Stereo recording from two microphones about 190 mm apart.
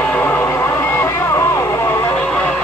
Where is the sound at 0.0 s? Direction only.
5° left (ahead or behind).